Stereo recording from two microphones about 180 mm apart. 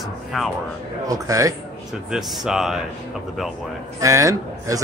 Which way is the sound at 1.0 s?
20° right (ahead or behind).